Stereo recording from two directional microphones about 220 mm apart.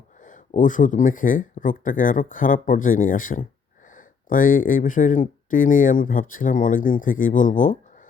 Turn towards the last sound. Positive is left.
turn(degrees=35)  # may be behind; listen again after turning